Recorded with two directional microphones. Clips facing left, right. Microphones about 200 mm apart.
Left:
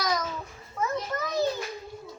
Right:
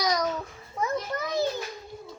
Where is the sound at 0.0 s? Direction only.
15° right (ahead or behind).